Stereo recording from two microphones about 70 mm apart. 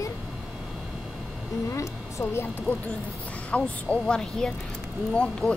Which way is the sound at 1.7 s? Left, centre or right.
Left.